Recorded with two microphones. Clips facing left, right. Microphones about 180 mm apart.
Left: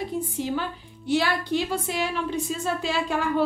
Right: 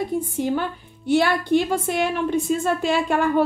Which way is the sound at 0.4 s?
55° right (ahead or behind).